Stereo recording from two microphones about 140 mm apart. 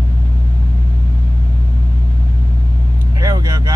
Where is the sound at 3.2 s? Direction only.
30° right (ahead or behind).